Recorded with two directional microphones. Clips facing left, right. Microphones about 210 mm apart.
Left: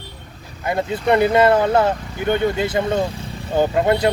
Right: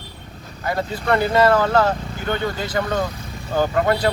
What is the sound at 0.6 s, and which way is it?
Speech, 20° left (ahead or behind).